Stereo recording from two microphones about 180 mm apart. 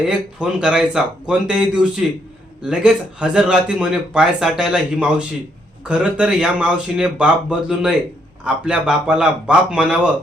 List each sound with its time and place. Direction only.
0.1 s speech: 5° right (ahead or behind)